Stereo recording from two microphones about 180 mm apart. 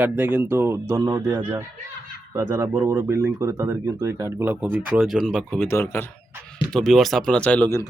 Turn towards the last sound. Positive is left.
turn(degrees=10)  # may be behind; listen again after turning